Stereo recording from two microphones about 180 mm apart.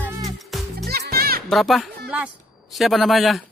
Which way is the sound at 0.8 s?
60° right (ahead or behind).